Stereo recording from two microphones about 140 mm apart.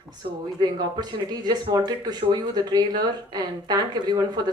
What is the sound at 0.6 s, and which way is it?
Speech, 30° right (ahead or behind).